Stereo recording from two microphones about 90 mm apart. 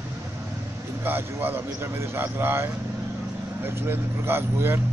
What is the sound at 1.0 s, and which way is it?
Speech, 25° right (ahead or behind).